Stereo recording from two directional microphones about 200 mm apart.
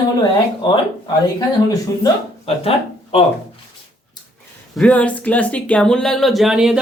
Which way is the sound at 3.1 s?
30° left (ahead or behind).